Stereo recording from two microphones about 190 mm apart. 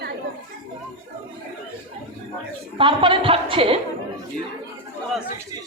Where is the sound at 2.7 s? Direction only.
25° right (ahead or behind).